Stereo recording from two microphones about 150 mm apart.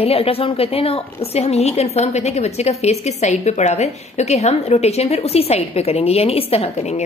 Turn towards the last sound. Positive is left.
turn(degrees=45)  # may be behind; listen again after turning